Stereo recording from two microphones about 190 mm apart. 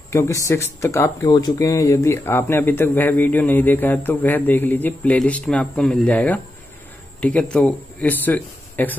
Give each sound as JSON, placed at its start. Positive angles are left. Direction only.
{"t": 0.1, "sound": "speech", "side_deg": 15}